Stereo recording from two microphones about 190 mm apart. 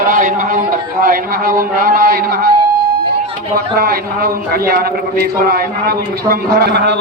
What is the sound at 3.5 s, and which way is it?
A man's voice, 50° right (ahead or behind).